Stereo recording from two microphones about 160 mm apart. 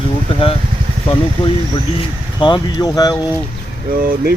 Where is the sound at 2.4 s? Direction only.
30° left (ahead or behind).